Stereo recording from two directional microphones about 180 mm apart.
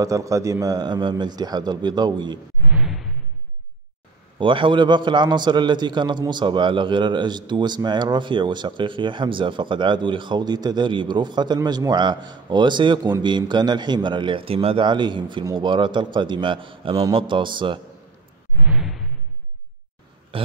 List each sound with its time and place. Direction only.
0.0 s a man's voice: 20° right (ahead or behind)
2.7 s whoosh: 5° right (ahead or behind)
4.4 s a man's voice: 25° right (ahead or behind)
18.7 s whoosh: 5° right (ahead or behind)
20.3 s a sound: 30° right (ahead or behind)